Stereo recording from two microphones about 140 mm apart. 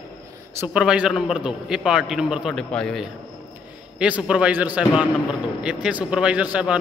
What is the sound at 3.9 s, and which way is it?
A man's voice, 10° right (ahead or behind).